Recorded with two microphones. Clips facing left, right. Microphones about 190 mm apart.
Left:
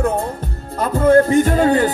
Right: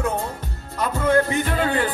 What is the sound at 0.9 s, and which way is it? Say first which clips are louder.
Speech: left 8 dB; 50° left (ahead or behind).